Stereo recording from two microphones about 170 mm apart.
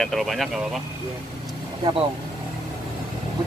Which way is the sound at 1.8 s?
30° right (ahead or behind).